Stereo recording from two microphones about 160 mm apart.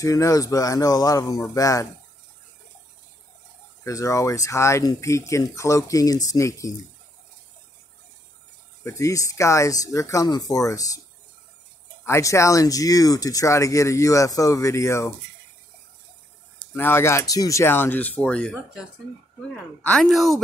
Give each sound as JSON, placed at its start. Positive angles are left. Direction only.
{"t": 0.0, "sound": "speech", "side_deg": 20}
{"t": 3.8, "sound": "speech", "side_deg": 20}
{"t": 8.8, "sound": "speech", "side_deg": 20}
{"t": 12.1, "sound": "speech", "side_deg": 20}
{"t": 16.7, "sound": "speech", "side_deg": 15}
{"t": 19.8, "sound": "speech", "side_deg": 5}